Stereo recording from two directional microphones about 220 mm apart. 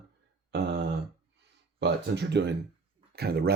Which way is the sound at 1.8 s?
50° right (ahead or behind).